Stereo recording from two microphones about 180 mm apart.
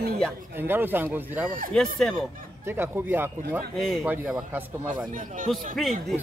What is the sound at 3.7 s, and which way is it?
Speech, centre (ahead or behind).